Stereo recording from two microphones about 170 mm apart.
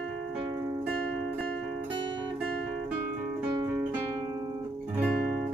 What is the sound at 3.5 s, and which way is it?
Music, 20° right (ahead or behind).